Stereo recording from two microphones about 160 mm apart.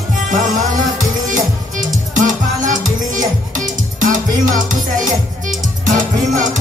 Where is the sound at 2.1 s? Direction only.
55° right (ahead or behind).